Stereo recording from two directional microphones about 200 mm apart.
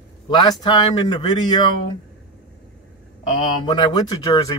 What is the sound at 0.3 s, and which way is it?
Speech, 20° left (ahead or behind).